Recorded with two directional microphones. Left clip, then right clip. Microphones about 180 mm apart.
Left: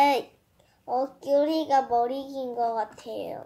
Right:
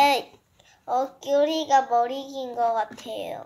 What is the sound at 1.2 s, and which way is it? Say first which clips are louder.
Child singing: even; 10° left (ahead or behind).